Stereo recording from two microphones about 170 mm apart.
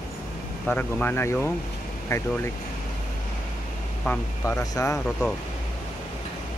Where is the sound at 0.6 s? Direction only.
10° left (ahead or behind).